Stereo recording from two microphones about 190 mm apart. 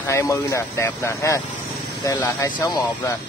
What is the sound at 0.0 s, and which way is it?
Speech, 15° left (ahead or behind).